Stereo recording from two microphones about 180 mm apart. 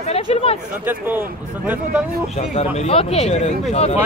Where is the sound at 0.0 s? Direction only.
35° left (ahead or behind).